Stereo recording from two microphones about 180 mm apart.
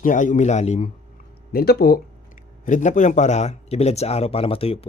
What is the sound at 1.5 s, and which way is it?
Speech, 60° left (ahead or behind).